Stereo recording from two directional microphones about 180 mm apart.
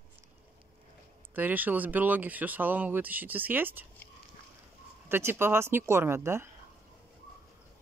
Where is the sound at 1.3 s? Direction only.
10° right (ahead or behind).